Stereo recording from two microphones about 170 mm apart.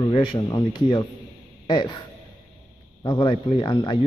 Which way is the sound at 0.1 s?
30° left (ahead or behind).